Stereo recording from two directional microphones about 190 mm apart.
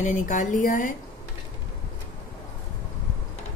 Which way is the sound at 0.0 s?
40° left (ahead or behind).